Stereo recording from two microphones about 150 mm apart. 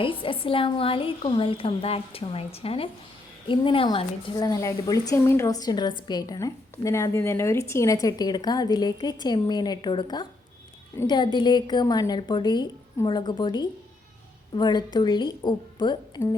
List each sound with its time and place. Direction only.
0.0 s a woman's voice: 35° left (ahead or behind)
4.4 s a woman's voice: 25° left (ahead or behind)